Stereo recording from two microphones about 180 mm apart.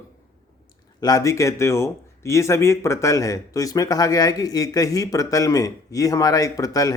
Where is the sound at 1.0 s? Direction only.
20° left (ahead or behind).